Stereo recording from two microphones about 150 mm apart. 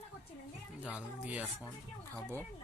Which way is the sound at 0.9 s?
10° right (ahead or behind).